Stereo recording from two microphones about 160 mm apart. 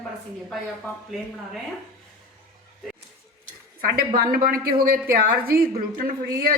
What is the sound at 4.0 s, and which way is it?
A woman's voice, 65° right (ahead or behind).